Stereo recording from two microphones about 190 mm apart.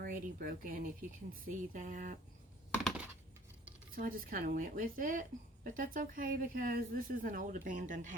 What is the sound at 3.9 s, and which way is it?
Speech, 50° right (ahead or behind).